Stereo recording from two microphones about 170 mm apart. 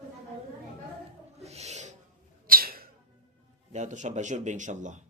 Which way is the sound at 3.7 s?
45° right (ahead or behind).